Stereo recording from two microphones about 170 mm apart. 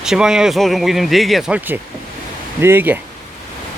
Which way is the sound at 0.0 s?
5° right (ahead or behind).